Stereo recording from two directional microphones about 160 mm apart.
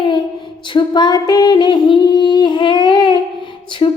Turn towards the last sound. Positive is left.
turn(degrees=30)  # may be behind; listen again after turning